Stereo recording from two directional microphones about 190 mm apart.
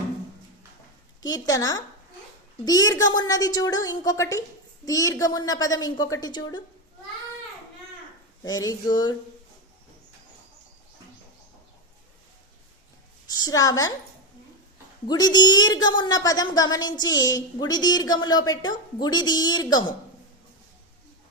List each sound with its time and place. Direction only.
1.2 s a woman's voice: 20° left (ahead or behind)
8.4 s a woman's voice: 20° left (ahead or behind)
13.2 s a woman's voice: 20° left (ahead or behind)
15.0 s a woman's voice: 20° left (ahead or behind)